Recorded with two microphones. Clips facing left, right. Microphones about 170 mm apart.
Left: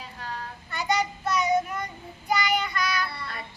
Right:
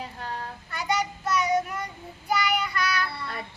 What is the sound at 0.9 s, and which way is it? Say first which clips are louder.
Child singing: left 1 dB; 10° right (ahead or behind).